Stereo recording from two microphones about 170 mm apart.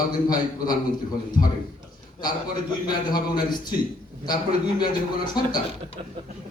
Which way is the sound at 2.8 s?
25° left (ahead or behind).